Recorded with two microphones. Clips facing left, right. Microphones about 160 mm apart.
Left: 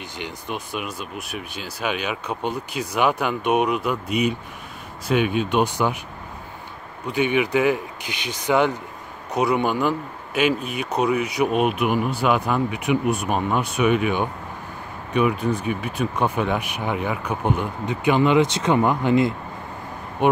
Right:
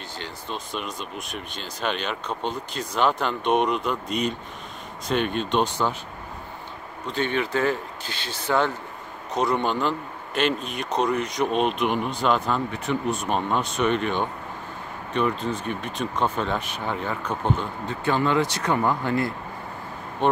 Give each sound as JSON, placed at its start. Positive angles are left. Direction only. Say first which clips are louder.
{"t": 0.2, "sound": "speech", "louder": "left 4 dB", "side_deg": 10}
{"t": 7.1, "sound": "speech", "louder": "left 5 dB", "side_deg": 10}